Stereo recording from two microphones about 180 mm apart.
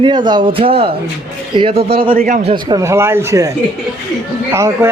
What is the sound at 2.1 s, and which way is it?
Speech, 50° right (ahead or behind).